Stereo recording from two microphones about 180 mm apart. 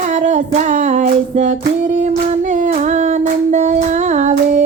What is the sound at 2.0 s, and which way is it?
Humming, 40° right (ahead or behind).